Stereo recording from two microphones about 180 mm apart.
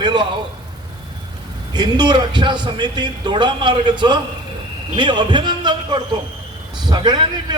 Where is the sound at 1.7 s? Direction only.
25° right (ahead or behind).